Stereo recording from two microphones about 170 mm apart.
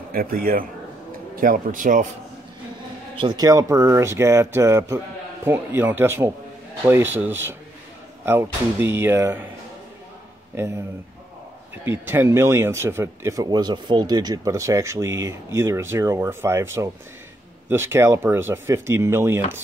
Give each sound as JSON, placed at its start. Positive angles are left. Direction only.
{"t": 0.1, "sound": "speech", "side_deg": -60}
{"t": 3.2, "sound": "speech", "side_deg": -25}
{"t": 10.5, "sound": "speech", "side_deg": -15}
{"t": 11.8, "sound": "speech", "side_deg": -15}